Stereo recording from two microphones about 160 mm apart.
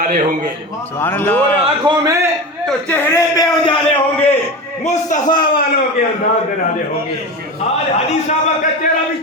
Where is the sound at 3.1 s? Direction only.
20° left (ahead or behind).